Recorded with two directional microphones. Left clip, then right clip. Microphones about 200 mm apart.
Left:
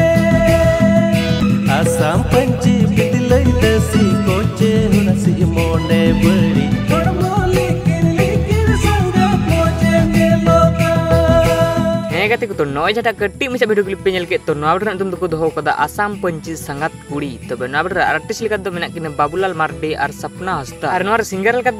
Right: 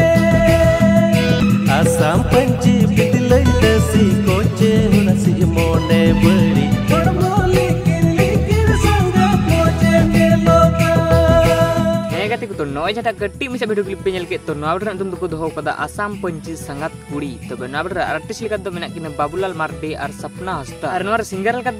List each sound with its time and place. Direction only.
0.0 s music: centre (ahead or behind)
12.1 s speech: 15° left (ahead or behind)
17.7 s speech: 15° left (ahead or behind)